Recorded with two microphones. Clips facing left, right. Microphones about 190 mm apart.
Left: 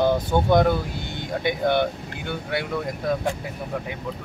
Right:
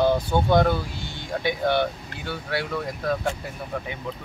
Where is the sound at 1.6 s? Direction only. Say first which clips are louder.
Left 2 dB; 15° left (ahead or behind).